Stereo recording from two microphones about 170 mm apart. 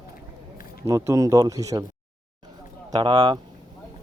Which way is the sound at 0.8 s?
20° right (ahead or behind).